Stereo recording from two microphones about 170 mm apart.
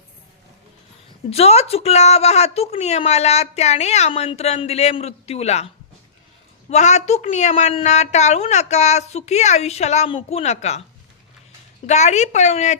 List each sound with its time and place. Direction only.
1.3 s a woman's voice: 35° left (ahead or behind)
11.9 s speech: 45° left (ahead or behind)